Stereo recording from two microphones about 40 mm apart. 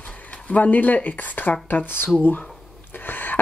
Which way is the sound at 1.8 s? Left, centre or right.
Left.